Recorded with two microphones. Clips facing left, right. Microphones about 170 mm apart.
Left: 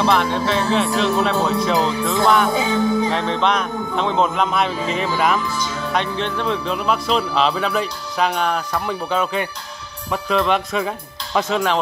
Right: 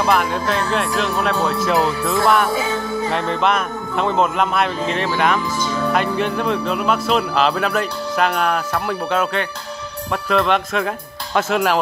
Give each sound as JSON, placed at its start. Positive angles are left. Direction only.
{"t": 0.0, "sound": "speech", "side_deg": -5}
{"t": 2.5, "sound": "music", "side_deg": 20}
{"t": 3.1, "sound": "speech", "side_deg": -5}